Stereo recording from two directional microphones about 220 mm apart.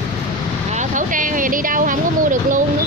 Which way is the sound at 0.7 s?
35° right (ahead or behind).